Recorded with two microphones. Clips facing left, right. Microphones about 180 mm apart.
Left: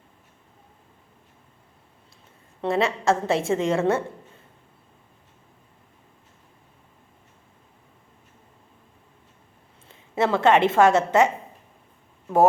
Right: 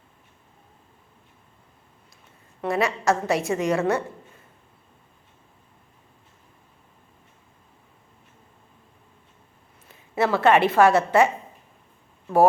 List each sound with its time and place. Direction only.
2.6 s a woman's voice: 25° left (ahead or behind)
9.9 s a woman's voice: 25° left (ahead or behind)